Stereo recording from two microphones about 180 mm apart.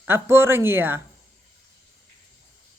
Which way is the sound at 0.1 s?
15° right (ahead or behind).